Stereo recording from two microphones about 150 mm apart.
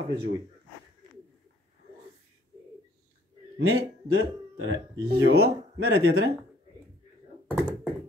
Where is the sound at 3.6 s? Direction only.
90° right.